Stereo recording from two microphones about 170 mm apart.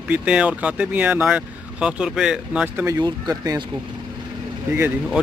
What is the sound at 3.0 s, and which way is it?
Speech, 20° right (ahead or behind).